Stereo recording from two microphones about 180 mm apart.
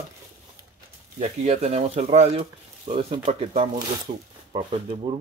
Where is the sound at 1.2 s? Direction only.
40° right (ahead or behind).